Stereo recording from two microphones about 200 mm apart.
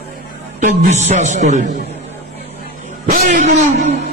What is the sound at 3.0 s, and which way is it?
Speech, 40° right (ahead or behind).